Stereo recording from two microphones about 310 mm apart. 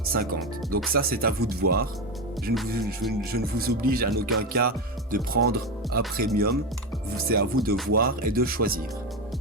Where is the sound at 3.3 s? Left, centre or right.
Right.